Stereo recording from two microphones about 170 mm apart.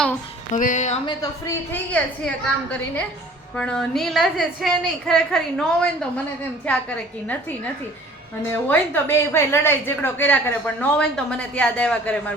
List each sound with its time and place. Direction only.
0.5 s speech: 45° left (ahead or behind)
1.0 s a woman's voice: 20° left (ahead or behind)
1.7 s a woman's voice: 10° left (ahead or behind)
6.7 s a woman's voice: 5° left (ahead or behind)
8.6 s a woman's voice: 10° left (ahead or behind)